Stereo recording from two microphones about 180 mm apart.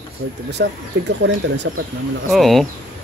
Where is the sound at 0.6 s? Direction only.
75° right (ahead or behind).